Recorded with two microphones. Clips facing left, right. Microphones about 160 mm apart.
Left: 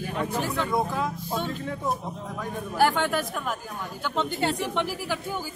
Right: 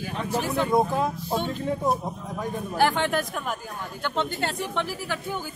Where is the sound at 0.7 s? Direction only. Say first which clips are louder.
Right 4 dB; 25° right (ahead or behind).